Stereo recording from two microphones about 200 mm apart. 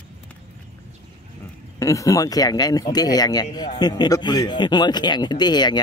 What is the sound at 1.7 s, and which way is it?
Speech, 15° left (ahead or behind).